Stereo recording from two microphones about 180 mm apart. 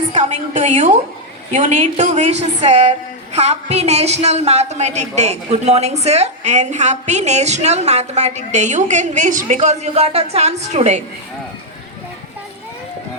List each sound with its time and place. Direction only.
0.1 s a woman's voice: 40° right (ahead or behind)